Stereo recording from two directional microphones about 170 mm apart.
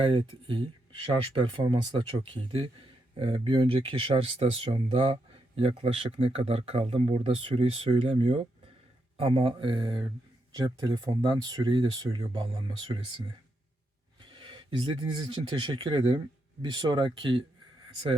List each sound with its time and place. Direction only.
0.0 s speech: 30° right (ahead or behind)